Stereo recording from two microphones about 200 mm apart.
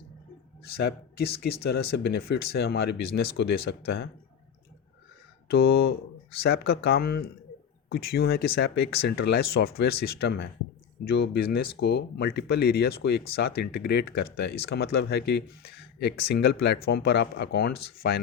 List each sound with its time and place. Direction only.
0.6 s speech: 55° left (ahead or behind)
5.5 s speech: 50° left (ahead or behind)